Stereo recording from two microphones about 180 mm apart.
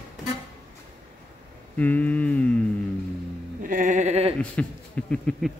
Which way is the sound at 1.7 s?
10° left (ahead or behind).